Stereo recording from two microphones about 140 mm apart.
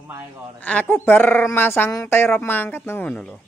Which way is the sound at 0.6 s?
10° left (ahead or behind).